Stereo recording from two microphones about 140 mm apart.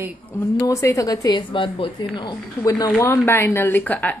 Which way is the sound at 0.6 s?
20° left (ahead or behind).